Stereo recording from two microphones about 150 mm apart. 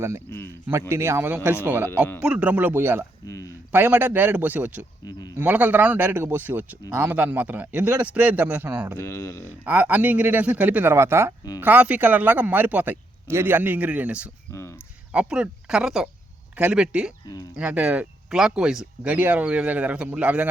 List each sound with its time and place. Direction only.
0.3 s speech: 15° left (ahead or behind)
0.7 s speech: 15° right (ahead or behind)
1.9 s speech: 15° left (ahead or behind)
2.2 s speech: 10° right (ahead or behind)
3.2 s a sound: 20° left (ahead or behind)
3.7 s speech: 15° right (ahead or behind)
9.0 s speech: 20° left (ahead or behind)
9.6 s speech: 10° right (ahead or behind)